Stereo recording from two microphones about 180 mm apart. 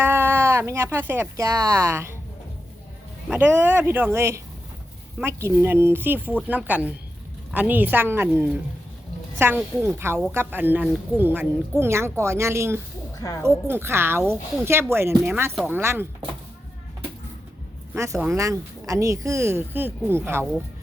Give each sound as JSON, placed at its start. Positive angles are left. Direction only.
{"t": 0.0, "sound": "speech", "side_deg": -10}
{"t": 3.2, "sound": "speech", "side_deg": -10}
{"t": 13.1, "sound": "speech", "side_deg": 20}
{"t": 13.4, "sound": "speech", "side_deg": -15}
{"t": 17.9, "sound": "speech", "side_deg": -15}